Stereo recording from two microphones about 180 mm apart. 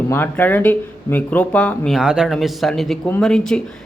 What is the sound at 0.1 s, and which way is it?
Speech, 10° left (ahead or behind).